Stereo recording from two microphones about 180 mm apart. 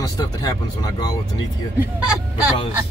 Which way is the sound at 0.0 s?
20° left (ahead or behind).